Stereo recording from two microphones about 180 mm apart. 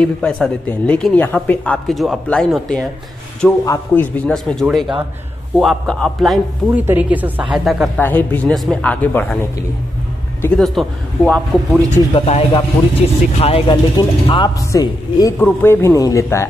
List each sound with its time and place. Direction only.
0.0 s speech: 5° left (ahead or behind)
3.6 s a man's voice: 15° left (ahead or behind); by 7.9 s centre (ahead or behind)
8.0 s a man's voice: 10° left (ahead or behind)
12.1 s a man's voice: 30° left (ahead or behind)